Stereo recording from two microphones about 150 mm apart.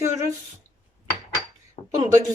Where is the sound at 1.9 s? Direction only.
25° right (ahead or behind).